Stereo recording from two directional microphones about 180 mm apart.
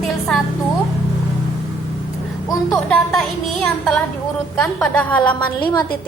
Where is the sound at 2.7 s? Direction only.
5° left (ahead or behind).